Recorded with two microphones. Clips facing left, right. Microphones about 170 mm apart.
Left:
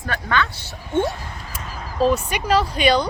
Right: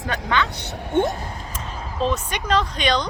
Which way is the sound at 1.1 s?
30° right (ahead or behind).